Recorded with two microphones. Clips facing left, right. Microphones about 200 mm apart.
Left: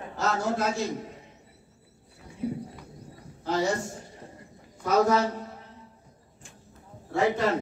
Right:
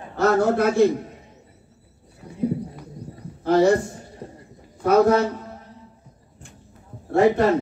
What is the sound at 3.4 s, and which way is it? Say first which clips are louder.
Speech: right 10 dB; 60° right (ahead or behind).